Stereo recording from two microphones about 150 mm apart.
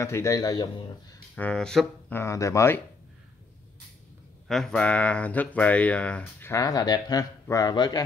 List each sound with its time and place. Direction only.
0.0 s speech: 20° left (ahead or behind)
1.3 s speech: 5° left (ahead or behind)
2.1 s speech: 20° left (ahead or behind)
4.5 s speech: 5° left (ahead or behind)
6.5 s speech: 25° left (ahead or behind)